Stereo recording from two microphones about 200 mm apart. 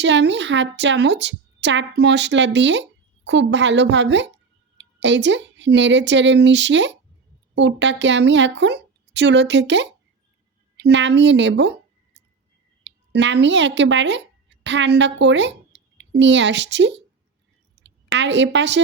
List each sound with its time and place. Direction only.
0.0 s a woman's voice: 60° right (ahead or behind)
12.8 s a woman's voice: 60° right (ahead or behind)